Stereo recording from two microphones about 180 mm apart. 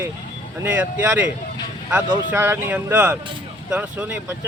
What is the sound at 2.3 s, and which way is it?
Speech, 10° right (ahead or behind).